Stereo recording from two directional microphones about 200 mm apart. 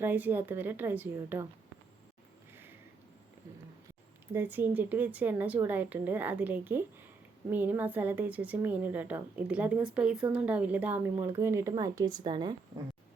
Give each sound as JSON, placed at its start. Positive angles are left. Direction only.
{"t": 0.0, "sound": "a woman's voice", "side_deg": -10}
{"t": 2.5, "sound": "a sound", "side_deg": -10}
{"t": 4.3, "sound": "a woman's voice", "side_deg": -10}